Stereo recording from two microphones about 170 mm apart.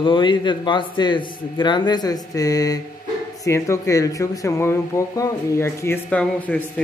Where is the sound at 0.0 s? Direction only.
30° left (ahead or behind).